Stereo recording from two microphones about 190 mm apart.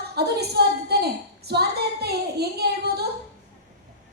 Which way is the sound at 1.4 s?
60° right (ahead or behind).